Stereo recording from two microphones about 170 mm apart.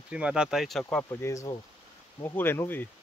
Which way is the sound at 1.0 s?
20° left (ahead or behind).